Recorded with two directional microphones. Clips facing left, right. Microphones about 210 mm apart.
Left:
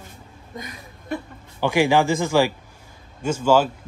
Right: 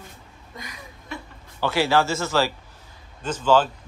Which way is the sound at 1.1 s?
55° left (ahead or behind).